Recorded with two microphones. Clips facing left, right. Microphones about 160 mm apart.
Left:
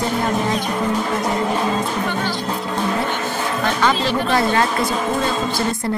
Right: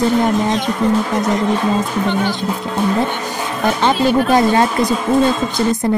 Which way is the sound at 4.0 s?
5° right (ahead or behind).